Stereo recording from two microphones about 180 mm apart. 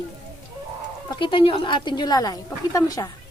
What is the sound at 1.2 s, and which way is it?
A woman's voice, 30° left (ahead or behind).